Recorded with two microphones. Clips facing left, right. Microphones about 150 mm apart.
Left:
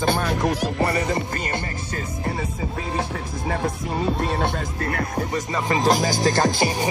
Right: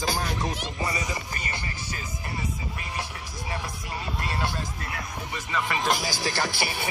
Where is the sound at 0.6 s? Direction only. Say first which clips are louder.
Left 9 dB; 50° left (ahead or behind).